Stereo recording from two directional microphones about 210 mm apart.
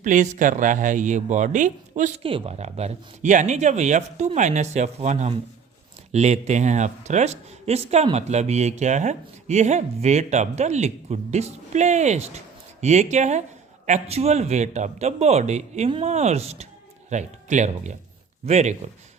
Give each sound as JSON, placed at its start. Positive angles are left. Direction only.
{"t": 0.0, "sound": "speech", "side_deg": -35}